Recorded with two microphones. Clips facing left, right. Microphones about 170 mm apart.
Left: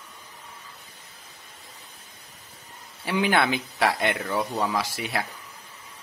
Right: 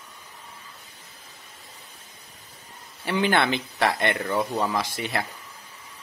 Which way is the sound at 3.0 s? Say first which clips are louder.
Even; 5° left (ahead or behind).